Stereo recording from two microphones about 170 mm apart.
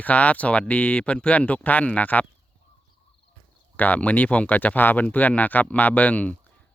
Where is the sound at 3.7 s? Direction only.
10° left (ahead or behind).